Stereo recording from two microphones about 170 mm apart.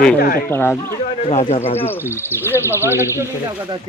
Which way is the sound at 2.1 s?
15° left (ahead or behind).